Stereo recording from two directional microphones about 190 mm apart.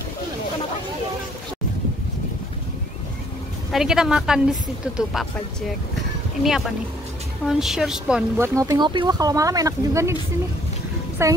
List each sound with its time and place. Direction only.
3.7 s speech: 5° right (ahead or behind)
6.4 s speech: centre (ahead or behind)
8.4 s speech: 15° right (ahead or behind)
11.2 s a woman's voice: 15° right (ahead or behind)